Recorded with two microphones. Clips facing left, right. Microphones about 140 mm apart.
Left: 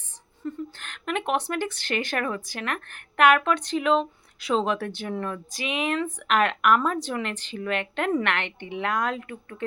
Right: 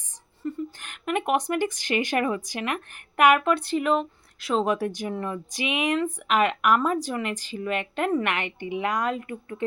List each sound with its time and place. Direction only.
0.4 s speech: 10° right (ahead or behind)